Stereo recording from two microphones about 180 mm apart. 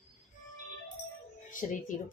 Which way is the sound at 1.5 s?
45° left (ahead or behind).